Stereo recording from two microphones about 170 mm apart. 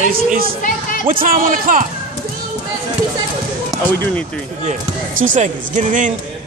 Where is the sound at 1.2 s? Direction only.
55° right (ahead or behind).